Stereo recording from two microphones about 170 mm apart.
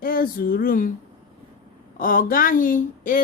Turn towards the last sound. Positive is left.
turn(degrees=55)  # may be behind; listen again after turning